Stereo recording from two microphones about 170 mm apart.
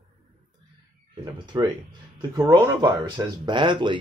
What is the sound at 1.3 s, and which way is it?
Speech, 25° right (ahead or behind).